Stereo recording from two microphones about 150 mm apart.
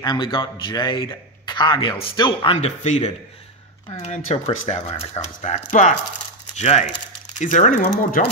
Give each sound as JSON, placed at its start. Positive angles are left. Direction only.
{"t": 0.0, "sound": "a man's voice", "side_deg": 30}